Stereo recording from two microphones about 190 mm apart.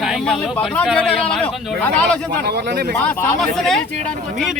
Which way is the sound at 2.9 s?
10° left (ahead or behind).